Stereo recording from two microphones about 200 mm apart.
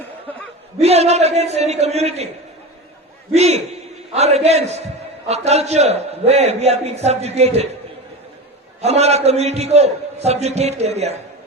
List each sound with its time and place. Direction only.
0.8 s a man's voice: 30° right (ahead or behind)
3.3 s a man's voice: 30° right (ahead or behind)
8.8 s a man's voice: 30° right (ahead or behind)